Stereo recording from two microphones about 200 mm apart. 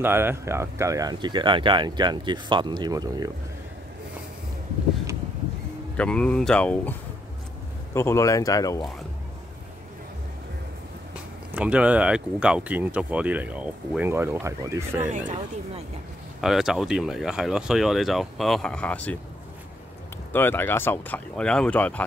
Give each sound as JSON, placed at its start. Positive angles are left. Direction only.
{"t": 0.0, "sound": "speech", "side_deg": -10}
{"t": 5.9, "sound": "speech", "side_deg": 5}
{"t": 11.5, "sound": "speech", "side_deg": -5}
{"t": 15.0, "sound": "speech", "side_deg": -40}
{"t": 16.3, "sound": "speech", "side_deg": 0}
{"t": 20.3, "sound": "speech", "side_deg": 10}